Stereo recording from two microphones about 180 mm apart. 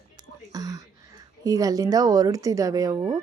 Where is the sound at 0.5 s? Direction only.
20° right (ahead or behind).